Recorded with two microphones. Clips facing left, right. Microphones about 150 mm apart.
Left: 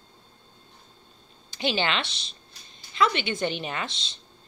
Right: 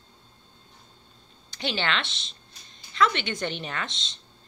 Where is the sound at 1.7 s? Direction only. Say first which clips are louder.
Left 1 dB; 10° left (ahead or behind).